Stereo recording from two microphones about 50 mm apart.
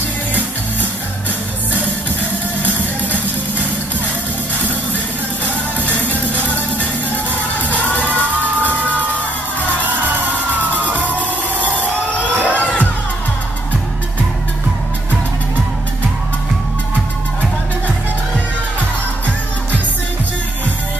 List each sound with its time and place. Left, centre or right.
2.8 s music: left
5.9 s music: left
8.5 s music: right
12.4 s crowd: left